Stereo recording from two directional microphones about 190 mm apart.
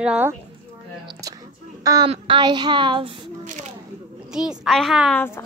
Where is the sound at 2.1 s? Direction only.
25° right (ahead or behind).